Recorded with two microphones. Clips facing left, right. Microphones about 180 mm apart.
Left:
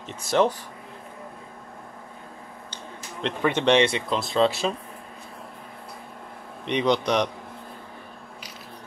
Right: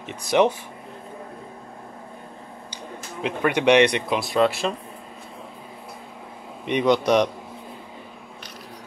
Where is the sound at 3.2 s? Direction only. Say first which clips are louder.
Right 2 dB; 10° right (ahead or behind).